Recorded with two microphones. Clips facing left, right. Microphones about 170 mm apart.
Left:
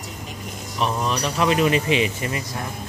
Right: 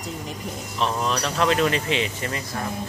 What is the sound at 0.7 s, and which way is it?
A man's voice, 10° left (ahead or behind).